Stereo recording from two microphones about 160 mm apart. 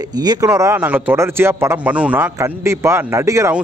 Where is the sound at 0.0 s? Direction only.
25° right (ahead or behind).